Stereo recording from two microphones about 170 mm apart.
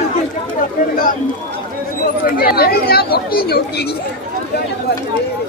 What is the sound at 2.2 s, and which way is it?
Speech, 65° left (ahead or behind).